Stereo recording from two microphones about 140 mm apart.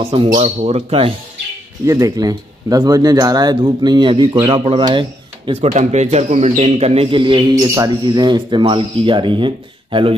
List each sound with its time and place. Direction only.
0.0 s speech: 40° right (ahead or behind)
1.9 s speech: 25° right (ahead or behind)
5.5 s speech: 50° right (ahead or behind)
7.5 s speech: 25° right (ahead or behind)